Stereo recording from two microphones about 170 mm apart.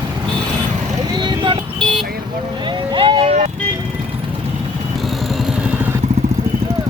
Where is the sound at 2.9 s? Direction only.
30° right (ahead or behind).